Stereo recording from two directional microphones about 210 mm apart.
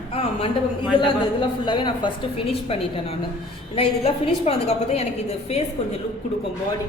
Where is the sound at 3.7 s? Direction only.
25° left (ahead or behind).